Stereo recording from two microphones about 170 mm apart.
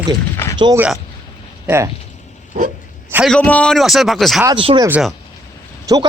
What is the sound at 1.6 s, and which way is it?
Speech, 15° right (ahead or behind).